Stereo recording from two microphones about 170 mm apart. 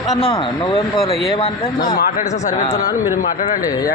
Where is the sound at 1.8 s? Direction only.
55° left (ahead or behind).